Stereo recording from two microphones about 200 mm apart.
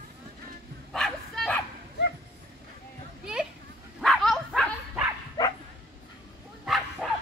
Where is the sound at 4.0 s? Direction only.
Centre (ahead or behind).